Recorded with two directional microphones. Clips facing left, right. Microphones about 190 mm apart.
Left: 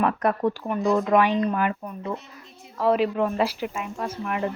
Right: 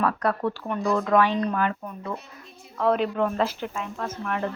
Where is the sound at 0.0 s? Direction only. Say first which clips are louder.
Left 2 dB; 20° left (ahead or behind).